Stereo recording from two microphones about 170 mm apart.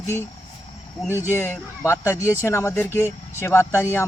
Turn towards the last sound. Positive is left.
turn(degrees=15)  # may be behind; listen again after turning